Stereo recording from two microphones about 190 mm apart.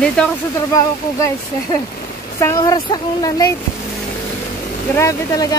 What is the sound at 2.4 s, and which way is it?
A woman's voice, 15° left (ahead or behind).